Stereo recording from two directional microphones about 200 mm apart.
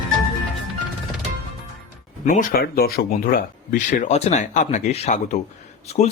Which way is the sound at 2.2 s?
45° left (ahead or behind).